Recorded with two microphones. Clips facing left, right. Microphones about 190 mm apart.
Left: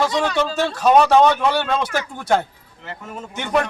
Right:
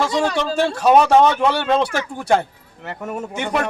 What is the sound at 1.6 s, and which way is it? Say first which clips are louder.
Speech: right 4 dB; 20° right (ahead or behind).